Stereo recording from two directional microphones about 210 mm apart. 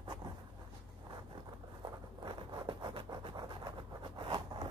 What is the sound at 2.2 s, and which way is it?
Scratch, 20° right (ahead or behind).